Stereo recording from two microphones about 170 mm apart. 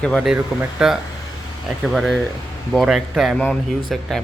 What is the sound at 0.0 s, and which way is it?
Speech, centre (ahead or behind).